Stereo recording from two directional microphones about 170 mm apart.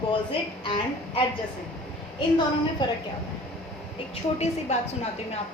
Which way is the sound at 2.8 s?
25° left (ahead or behind).